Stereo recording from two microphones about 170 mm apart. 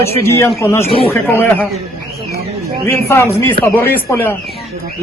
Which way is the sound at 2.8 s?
15° left (ahead or behind).